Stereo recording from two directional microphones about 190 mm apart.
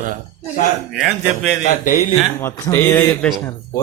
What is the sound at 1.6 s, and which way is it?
Speech, 45° left (ahead or behind).